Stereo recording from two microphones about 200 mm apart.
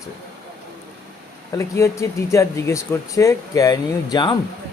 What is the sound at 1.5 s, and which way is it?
Speech, 15° left (ahead or behind).